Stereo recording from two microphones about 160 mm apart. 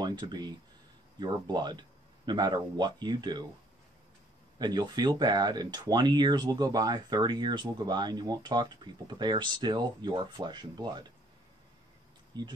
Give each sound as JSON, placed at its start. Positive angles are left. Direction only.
{"t": 0.0, "sound": "speech", "side_deg": -25}
{"t": 4.6, "sound": "speech", "side_deg": -25}
{"t": 12.3, "sound": "speech", "side_deg": -25}